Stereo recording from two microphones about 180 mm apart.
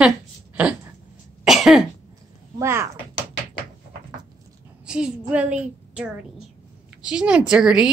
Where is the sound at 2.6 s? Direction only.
15° right (ahead or behind).